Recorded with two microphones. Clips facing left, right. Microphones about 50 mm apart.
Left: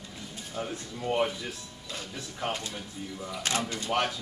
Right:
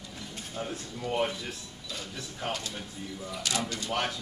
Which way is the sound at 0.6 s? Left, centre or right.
Left.